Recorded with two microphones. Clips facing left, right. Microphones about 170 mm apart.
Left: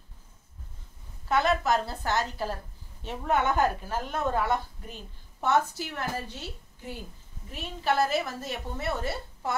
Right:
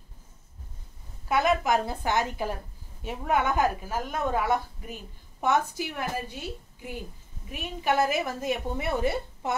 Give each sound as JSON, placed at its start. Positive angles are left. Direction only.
{"t": 1.3, "sound": "a woman's voice", "side_deg": -15}